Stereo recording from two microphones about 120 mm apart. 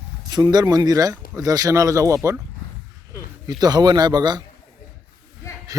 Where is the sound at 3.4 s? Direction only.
35° right (ahead or behind).